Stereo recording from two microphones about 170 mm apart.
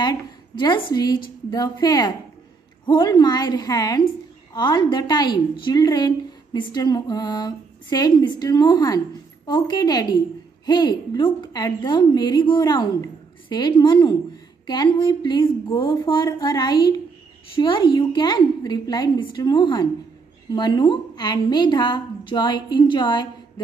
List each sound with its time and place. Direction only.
0.0 s a woman's voice: 25° left (ahead or behind)